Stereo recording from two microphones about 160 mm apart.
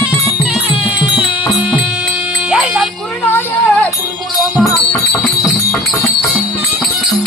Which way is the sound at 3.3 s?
15° left (ahead or behind).